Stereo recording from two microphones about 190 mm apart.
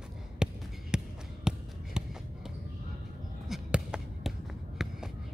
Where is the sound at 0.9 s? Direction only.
5° right (ahead or behind).